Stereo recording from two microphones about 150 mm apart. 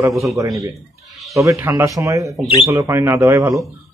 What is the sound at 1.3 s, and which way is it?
A man's voice, 20° right (ahead or behind).